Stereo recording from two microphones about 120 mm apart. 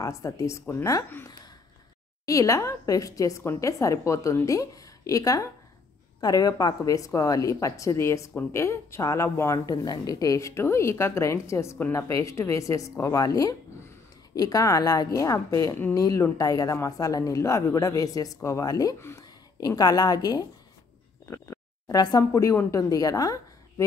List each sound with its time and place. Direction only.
0.0 s speech: 25° left (ahead or behind)
2.2 s a woman's voice: 25° left (ahead or behind)